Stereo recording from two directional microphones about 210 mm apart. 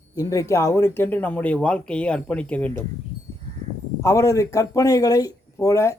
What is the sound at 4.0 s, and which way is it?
A man's voice, 15° left (ahead or behind).